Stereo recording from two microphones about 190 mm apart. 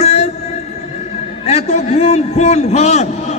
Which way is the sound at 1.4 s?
35° left (ahead or behind).